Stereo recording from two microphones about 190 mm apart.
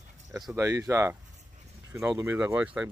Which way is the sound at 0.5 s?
15° right (ahead or behind).